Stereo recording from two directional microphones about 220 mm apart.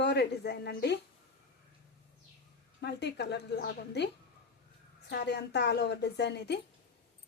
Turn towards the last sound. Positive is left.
turn(degrees=50)  # may be behind; listen again after turning